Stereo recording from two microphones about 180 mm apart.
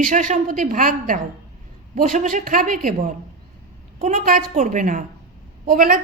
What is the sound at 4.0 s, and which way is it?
A woman's voice, 45° right (ahead or behind).